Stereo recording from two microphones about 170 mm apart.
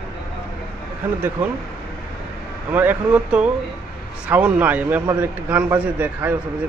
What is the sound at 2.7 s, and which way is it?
A man's voice, 10° right (ahead or behind).